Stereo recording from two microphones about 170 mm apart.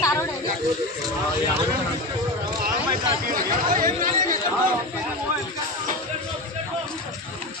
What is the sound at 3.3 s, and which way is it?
Speech, 55° right (ahead or behind).